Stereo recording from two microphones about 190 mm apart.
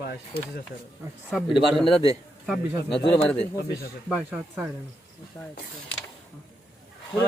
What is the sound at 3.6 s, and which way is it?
Speech, 55° left (ahead or behind).